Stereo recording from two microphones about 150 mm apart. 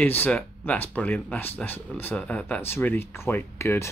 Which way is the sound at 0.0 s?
10° left (ahead or behind).